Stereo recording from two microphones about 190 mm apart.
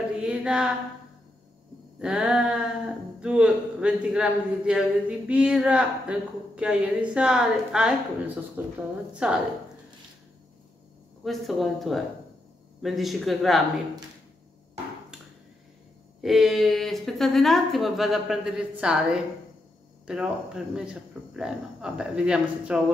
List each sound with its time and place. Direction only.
0.2 s a sound: 5° right (ahead or behind)
2.0 s speech: 5° right (ahead or behind)
11.2 s speech: centre (ahead or behind)
16.2 s speech: centre (ahead or behind)